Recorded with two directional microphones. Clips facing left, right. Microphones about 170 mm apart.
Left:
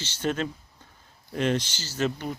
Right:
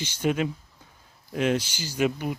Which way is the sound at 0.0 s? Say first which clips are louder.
Right 3 dB; 10° right (ahead or behind).